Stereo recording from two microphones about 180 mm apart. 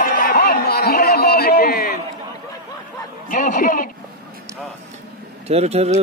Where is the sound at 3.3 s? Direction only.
45° left (ahead or behind).